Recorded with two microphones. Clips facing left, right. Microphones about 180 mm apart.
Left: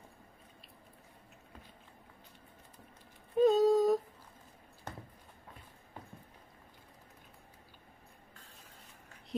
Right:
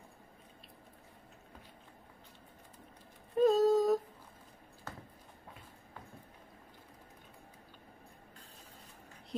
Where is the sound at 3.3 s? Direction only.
Centre (ahead or behind).